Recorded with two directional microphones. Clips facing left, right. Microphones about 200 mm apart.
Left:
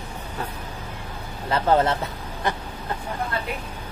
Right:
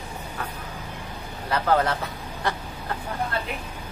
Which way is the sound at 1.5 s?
25° left (ahead or behind).